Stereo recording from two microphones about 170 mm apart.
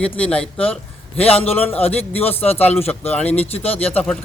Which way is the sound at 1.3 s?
35° left (ahead or behind).